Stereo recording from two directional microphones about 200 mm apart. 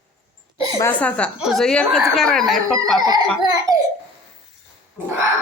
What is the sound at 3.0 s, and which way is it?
Speech, 20° right (ahead or behind).